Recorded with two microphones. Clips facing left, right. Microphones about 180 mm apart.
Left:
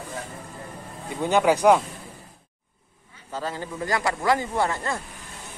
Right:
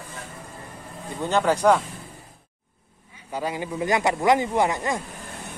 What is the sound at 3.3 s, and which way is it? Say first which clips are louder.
A man's voice: right 3 dB; 15° right (ahead or behind).